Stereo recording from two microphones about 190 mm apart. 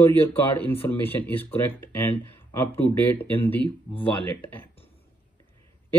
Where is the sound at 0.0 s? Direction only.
10° left (ahead or behind).